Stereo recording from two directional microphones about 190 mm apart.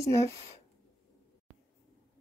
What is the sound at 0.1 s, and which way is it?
Speech, 35° left (ahead or behind).